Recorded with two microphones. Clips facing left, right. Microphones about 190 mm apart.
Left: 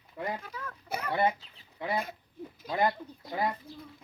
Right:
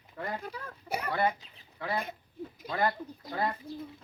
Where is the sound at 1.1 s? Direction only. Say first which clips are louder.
Left 2 dB; 20° left (ahead or behind).